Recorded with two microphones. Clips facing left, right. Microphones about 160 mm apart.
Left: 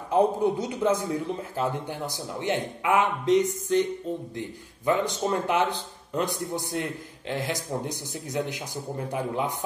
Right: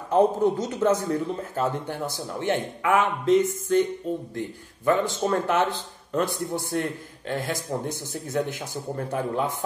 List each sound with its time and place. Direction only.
0.1 s a man's voice: 10° left (ahead or behind)